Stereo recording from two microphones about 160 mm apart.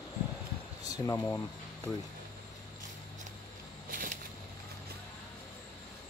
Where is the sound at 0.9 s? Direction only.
20° left (ahead or behind).